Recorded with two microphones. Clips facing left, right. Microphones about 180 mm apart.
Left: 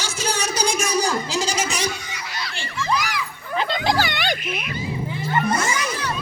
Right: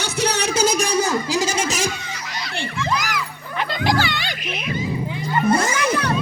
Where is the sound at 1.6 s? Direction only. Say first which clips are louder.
Right 2 dB; 45° right (ahead or behind).